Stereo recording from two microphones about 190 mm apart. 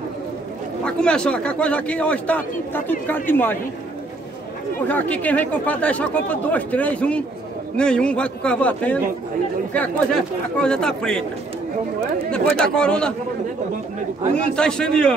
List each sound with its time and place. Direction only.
0.8 s a man's voice: 5° left (ahead or behind)
4.8 s a man's voice: 10° left (ahead or behind)
12.5 s speech: 5° left (ahead or behind)
14.3 s speech: 5° left (ahead or behind)